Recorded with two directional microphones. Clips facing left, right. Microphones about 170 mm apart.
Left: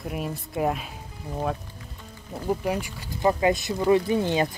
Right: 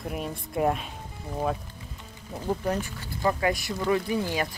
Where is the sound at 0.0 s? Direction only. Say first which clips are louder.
Left 2 dB; centre (ahead or behind).